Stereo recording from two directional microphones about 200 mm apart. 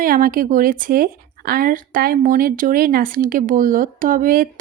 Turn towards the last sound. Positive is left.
turn(degrees=-45)  # may be behind; listen again after turning